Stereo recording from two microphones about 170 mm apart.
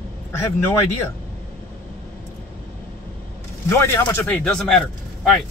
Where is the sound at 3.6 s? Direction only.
15° left (ahead or behind).